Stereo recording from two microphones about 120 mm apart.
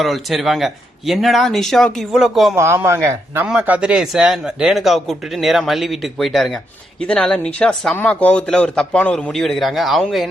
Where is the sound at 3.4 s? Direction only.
10° right (ahead or behind).